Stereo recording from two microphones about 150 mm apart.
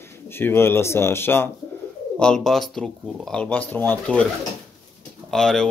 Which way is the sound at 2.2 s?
5° left (ahead or behind).